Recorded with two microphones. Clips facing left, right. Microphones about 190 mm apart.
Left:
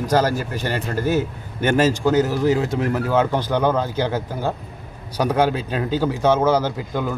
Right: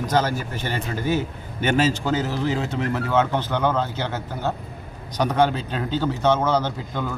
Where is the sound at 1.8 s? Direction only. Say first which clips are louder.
Left 5 dB; 10° left (ahead or behind).